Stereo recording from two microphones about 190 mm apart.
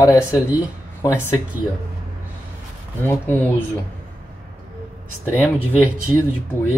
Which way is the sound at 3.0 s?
10° left (ahead or behind).